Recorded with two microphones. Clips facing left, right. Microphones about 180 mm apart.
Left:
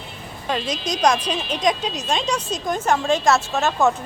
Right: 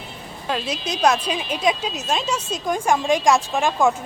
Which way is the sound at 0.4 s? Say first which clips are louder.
Left 1 dB; 5° right (ahead or behind).